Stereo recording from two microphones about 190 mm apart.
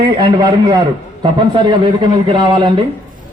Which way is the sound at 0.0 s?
25° right (ahead or behind).